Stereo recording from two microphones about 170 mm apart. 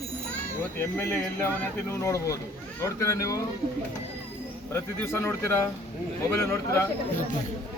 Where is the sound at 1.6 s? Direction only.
15° left (ahead or behind).